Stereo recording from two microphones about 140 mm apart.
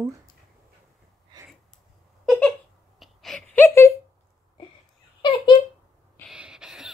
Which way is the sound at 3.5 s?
20° left (ahead or behind).